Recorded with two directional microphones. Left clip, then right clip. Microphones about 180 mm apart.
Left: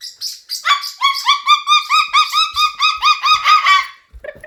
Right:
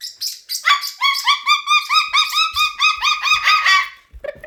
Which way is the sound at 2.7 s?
10° right (ahead or behind).